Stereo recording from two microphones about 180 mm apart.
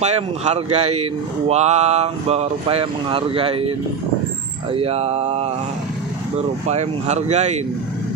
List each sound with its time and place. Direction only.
0.0 s speech: 35° right (ahead or behind)
4.7 s speech: 35° right (ahead or behind)